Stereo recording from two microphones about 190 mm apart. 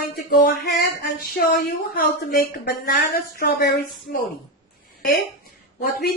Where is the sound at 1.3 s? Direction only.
50° left (ahead or behind).